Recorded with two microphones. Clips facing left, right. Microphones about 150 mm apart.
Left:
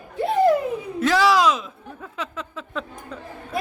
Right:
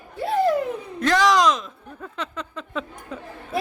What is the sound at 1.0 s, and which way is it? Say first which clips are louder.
Speech: even; 5° left (ahead or behind).